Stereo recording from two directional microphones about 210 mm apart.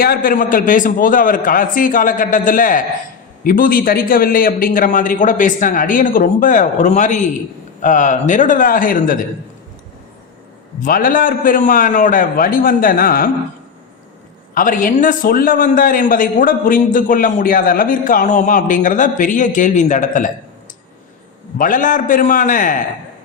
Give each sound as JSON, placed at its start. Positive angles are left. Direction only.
{"t": 0.0, "sound": "a man's voice", "side_deg": 45}
{"t": 10.8, "sound": "a man's voice", "side_deg": 40}
{"t": 14.5, "sound": "a man's voice", "side_deg": 40}
{"t": 21.6, "sound": "a man's voice", "side_deg": 40}